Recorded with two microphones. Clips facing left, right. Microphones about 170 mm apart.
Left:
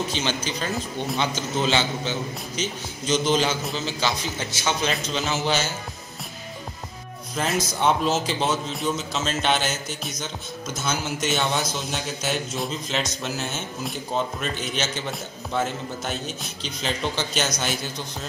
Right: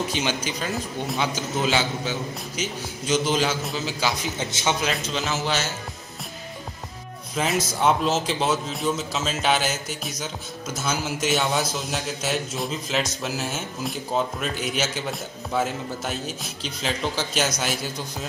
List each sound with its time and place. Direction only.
0.1 s a man's voice: 10° right (ahead or behind)
4.4 s speech: 20° right (ahead or behind)
4.8 s a man's voice: centre (ahead or behind)
7.3 s a man's voice: centre (ahead or behind)